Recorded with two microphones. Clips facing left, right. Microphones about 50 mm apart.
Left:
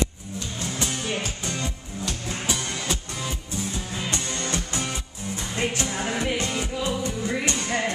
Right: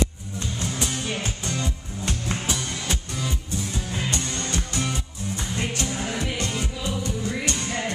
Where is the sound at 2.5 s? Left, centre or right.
Centre.